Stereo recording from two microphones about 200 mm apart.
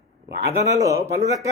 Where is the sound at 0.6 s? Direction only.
15° right (ahead or behind).